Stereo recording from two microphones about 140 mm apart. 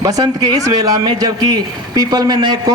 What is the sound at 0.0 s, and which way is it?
A man's voice, 25° right (ahead or behind).